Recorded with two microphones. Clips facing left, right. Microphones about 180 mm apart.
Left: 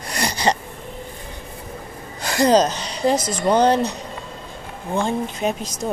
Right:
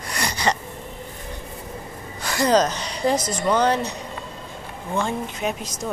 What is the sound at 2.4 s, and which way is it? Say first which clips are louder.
Speech: left 3 dB; 30° left (ahead or behind).